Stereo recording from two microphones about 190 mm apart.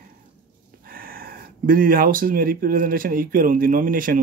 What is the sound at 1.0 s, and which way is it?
Speech, 50° right (ahead or behind).